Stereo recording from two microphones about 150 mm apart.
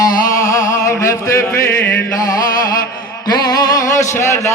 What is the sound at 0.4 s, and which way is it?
Music, 20° left (ahead or behind).